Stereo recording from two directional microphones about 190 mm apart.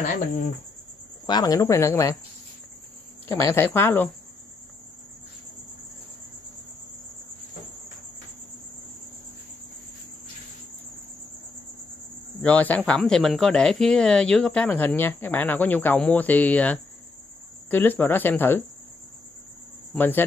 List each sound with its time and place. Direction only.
1.2 s speech: 20° left (ahead or behind)
3.4 s speech: 10° left (ahead or behind)
12.4 s speech: 10° left (ahead or behind)
19.9 s speech: 10° left (ahead or behind)